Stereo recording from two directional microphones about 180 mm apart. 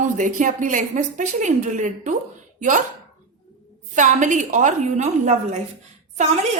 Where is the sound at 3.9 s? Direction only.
45° right (ahead or behind).